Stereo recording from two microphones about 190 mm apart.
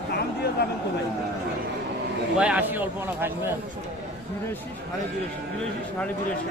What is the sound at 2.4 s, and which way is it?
A man's voice, 5° right (ahead or behind).